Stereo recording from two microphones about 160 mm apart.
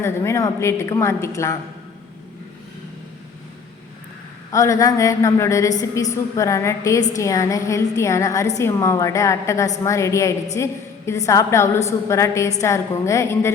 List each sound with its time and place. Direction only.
0.0 s a woman's voice: 15° left (ahead or behind)
4.5 s a woman's voice: 20° left (ahead or behind)